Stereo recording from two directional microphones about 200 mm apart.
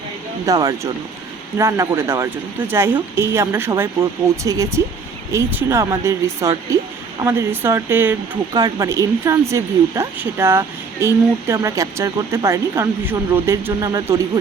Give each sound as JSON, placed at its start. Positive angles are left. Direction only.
{"t": 0.4, "sound": "speech", "side_deg": -15}